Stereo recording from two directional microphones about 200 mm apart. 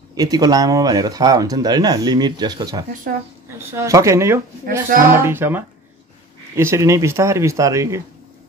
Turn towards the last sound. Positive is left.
turn(degrees=-15)  # may be behind; listen again after turning